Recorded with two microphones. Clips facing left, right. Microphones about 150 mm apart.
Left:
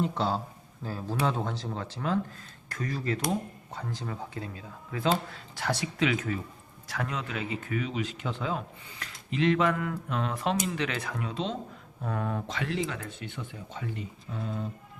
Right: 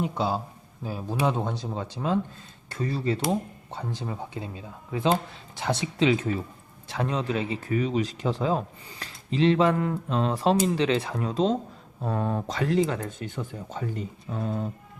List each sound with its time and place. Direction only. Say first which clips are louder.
0.0 s speech: right 1 dB; 10° right (ahead or behind); by 14.7 s 45° right (ahead or behind)